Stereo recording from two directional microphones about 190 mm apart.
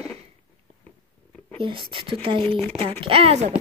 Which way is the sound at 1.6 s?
25° right (ahead or behind).